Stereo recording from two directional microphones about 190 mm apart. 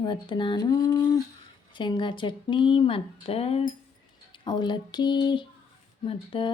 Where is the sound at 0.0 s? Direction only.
25° left (ahead or behind).